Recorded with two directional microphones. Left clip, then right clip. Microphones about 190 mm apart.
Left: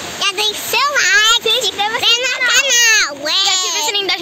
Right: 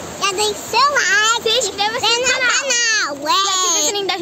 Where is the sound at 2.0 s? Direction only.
Centre (ahead or behind).